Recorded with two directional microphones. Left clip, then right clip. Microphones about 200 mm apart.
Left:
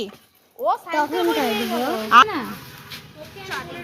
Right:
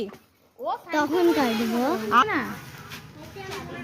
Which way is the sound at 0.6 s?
40° left (ahead or behind).